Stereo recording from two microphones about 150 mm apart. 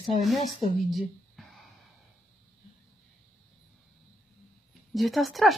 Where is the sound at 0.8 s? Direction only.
Centre (ahead or behind).